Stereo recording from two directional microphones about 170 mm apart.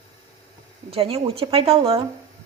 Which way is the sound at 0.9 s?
35° right (ahead or behind).